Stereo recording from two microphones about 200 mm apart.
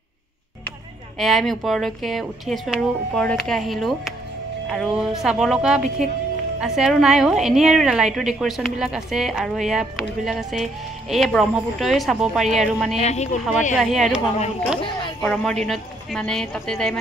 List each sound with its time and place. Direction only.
1.1 s a woman's voice: centre (ahead or behind)
13.0 s speech: 35° left (ahead or behind)
13.7 s a woman's voice: centre (ahead or behind)
15.2 s a woman's voice: 5° left (ahead or behind)